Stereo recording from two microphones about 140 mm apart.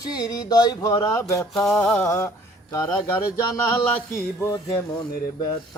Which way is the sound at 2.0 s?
20° left (ahead or behind).